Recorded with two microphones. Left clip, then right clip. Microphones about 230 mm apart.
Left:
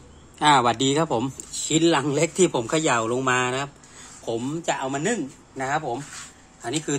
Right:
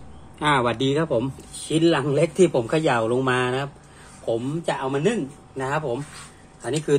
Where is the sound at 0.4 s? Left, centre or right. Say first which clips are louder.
Left 3 dB; left.